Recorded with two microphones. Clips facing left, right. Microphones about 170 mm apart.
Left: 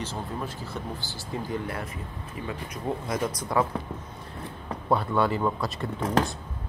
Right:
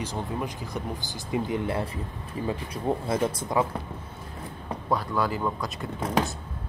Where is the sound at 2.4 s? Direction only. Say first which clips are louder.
Right 4 dB; 30° right (ahead or behind).